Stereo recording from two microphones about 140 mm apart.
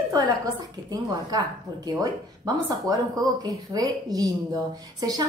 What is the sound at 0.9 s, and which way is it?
A woman's voice, 30° right (ahead or behind).